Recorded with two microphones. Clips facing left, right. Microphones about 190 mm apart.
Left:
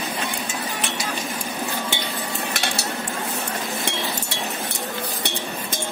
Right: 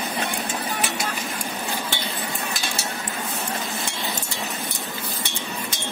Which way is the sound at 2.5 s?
70° left (ahead or behind).